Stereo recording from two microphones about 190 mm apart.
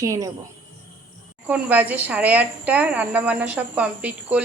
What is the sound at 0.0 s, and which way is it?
Speech, 15° right (ahead or behind).